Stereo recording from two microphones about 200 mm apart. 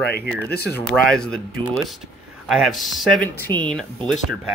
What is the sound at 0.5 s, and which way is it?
Speech, 50° left (ahead or behind).